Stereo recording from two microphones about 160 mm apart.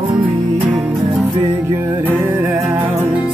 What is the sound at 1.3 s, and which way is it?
Music, 15° right (ahead or behind).